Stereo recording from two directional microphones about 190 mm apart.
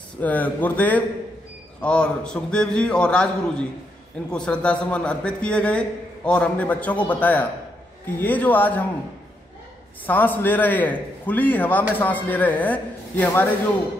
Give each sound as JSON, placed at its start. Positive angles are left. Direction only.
{"t": 0.2, "sound": "a man's voice", "side_deg": 10}
{"t": 10.0, "sound": "a man's voice", "side_deg": 10}